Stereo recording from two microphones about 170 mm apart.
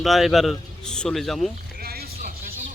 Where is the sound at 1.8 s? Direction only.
65° right (ahead or behind).